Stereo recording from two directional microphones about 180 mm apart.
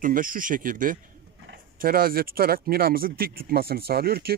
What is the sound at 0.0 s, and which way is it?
Speech, 50° right (ahead or behind).